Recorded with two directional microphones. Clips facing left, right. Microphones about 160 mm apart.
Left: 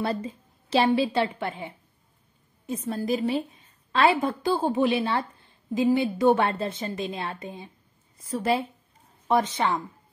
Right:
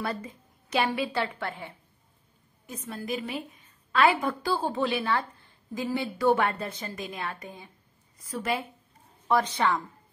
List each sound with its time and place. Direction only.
0.0 s a woman's voice: 30° left (ahead or behind)
2.6 s a woman's voice: 30° left (ahead or behind)